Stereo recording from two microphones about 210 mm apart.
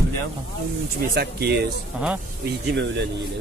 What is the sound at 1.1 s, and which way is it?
Speech, 50° right (ahead or behind).